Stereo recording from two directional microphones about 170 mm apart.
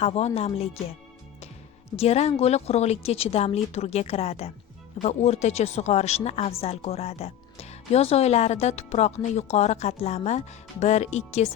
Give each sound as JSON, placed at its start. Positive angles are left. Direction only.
{"t": 0.0, "sound": "speech", "side_deg": 40}
{"t": 2.0, "sound": "speech", "side_deg": 40}